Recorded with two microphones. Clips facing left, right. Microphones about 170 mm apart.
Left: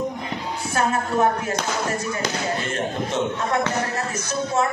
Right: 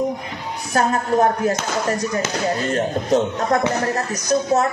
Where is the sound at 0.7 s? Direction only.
40° right (ahead or behind).